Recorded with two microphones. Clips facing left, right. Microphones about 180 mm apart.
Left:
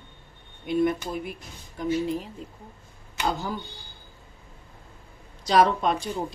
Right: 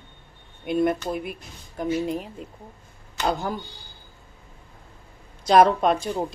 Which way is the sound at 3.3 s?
55° right (ahead or behind).